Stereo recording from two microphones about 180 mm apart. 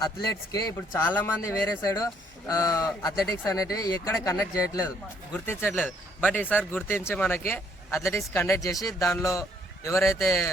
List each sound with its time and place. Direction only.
0.0 s speech: 20° left (ahead or behind)